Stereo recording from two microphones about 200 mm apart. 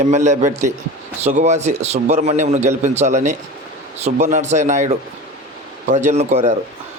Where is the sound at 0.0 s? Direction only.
35° right (ahead or behind).